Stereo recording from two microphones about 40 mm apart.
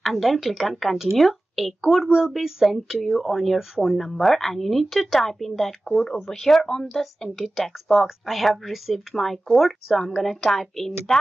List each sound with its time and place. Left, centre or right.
0.0 s speech: centre
2.0 s speech: centre
2.3 s speech: centre